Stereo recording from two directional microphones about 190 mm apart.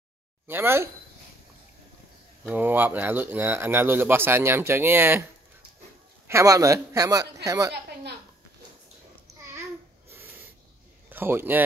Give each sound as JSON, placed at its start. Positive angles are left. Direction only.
{"t": 0.5, "sound": "speech", "side_deg": -10}
{"t": 2.5, "sound": "speech", "side_deg": -10}
{"t": 6.2, "sound": "speech", "side_deg": -15}
{"t": 11.1, "sound": "speech", "side_deg": -10}